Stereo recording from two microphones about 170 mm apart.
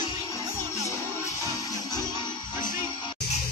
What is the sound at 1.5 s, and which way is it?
Music, 20° left (ahead or behind).